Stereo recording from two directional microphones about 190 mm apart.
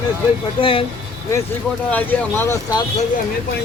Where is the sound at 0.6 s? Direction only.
30° left (ahead or behind).